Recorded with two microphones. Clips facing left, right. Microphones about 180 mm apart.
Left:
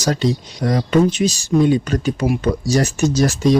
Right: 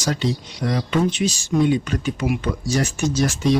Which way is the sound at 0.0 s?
40° left (ahead or behind).